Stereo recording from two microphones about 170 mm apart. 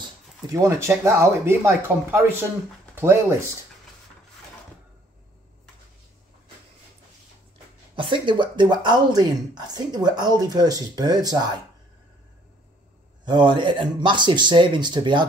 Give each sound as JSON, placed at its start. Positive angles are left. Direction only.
{"t": 0.5, "sound": "speech", "side_deg": -20}
{"t": 7.9, "sound": "speech", "side_deg": -30}
{"t": 13.2, "sound": "speech", "side_deg": -25}